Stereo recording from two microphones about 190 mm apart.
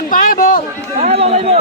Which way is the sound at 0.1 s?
50° left (ahead or behind).